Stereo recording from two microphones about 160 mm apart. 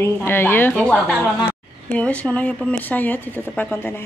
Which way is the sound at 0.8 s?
Centre (ahead or behind).